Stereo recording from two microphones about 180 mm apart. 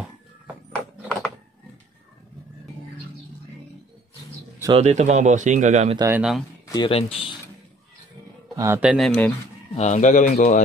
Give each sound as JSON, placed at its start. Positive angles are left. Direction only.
{"t": 0.7, "sound": "a sound", "side_deg": 5}
{"t": 4.7, "sound": "speech", "side_deg": -40}
{"t": 5.9, "sound": "speech", "side_deg": -15}
{"t": 6.7, "sound": "a man's voice", "side_deg": 30}
{"t": 8.5, "sound": "speech", "side_deg": -15}
{"t": 8.9, "sound": "speech", "side_deg": 5}
{"t": 9.8, "sound": "a man's voice", "side_deg": 40}